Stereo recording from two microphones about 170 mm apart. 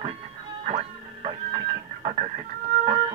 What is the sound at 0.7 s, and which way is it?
Music, 40° right (ahead or behind).